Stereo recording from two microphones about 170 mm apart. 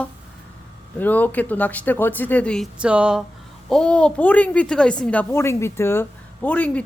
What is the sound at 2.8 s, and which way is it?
Speech, 5° right (ahead or behind).